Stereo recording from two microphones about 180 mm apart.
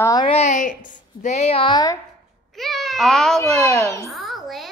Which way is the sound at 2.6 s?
Centre (ahead or behind).